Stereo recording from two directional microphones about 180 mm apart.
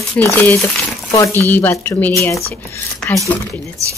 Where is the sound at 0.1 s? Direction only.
10° left (ahead or behind).